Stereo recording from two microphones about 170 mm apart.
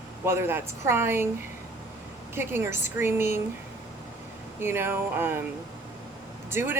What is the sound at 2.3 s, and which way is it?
Speech, 15° right (ahead or behind).